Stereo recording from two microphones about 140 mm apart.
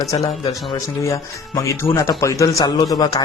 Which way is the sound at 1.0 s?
20° left (ahead or behind).